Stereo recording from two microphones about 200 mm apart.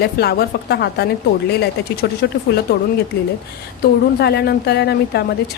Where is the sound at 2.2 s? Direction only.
60° left (ahead or behind).